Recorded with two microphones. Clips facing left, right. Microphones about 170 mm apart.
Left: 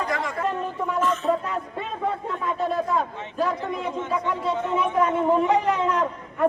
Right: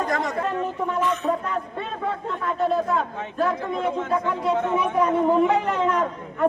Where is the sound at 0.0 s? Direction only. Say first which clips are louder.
Right 2 dB; 45° right (ahead or behind).